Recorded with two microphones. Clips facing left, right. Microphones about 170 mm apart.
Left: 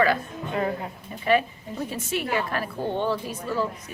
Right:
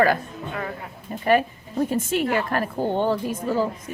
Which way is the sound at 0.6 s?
30° left (ahead or behind).